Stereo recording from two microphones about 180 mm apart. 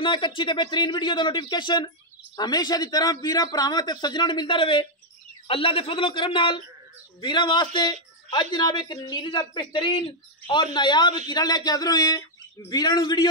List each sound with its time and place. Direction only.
0.0 s a man's voice: 25° left (ahead or behind)